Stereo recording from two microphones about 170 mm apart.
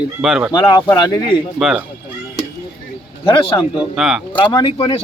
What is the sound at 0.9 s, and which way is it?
Speech, 25° left (ahead or behind).